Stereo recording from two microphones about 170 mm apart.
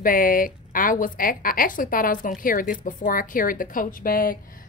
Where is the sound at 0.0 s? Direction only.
55° left (ahead or behind).